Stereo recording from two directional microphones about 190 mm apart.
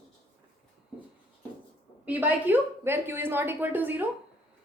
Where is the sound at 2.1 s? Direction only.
10° right (ahead or behind).